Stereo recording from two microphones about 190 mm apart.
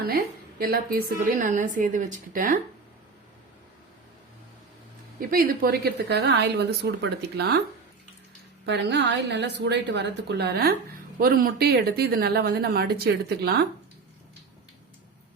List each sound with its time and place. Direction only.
0.6 s a woman's voice: 50° right (ahead or behind)
5.3 s speech: 50° right (ahead or behind)
8.6 s speech: 65° right (ahead or behind)